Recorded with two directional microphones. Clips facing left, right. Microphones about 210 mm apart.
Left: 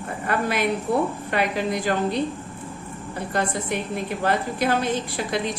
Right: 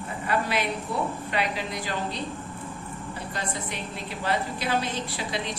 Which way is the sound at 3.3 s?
50° left (ahead or behind).